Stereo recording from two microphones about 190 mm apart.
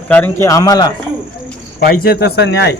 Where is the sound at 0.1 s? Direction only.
10° left (ahead or behind).